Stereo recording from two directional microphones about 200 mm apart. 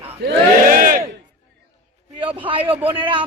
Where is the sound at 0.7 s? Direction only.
45° right (ahead or behind).